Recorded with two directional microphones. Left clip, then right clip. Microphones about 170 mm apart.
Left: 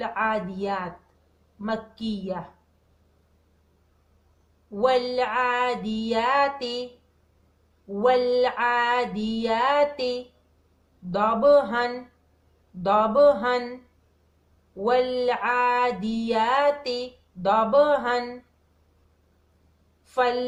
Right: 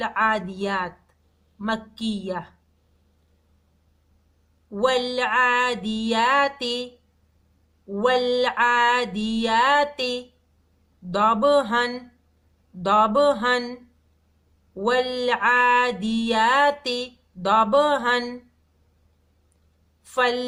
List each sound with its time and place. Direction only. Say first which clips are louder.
0.0 s music: right 3 dB; 20° right (ahead or behind)
4.7 s music: even; 20° right (ahead or behind)
7.9 s music: even; 20° right (ahead or behind)
14.8 s music: even; 20° right (ahead or behind)
20.1 s a woman's voice: right 1 dB; 25° right (ahead or behind)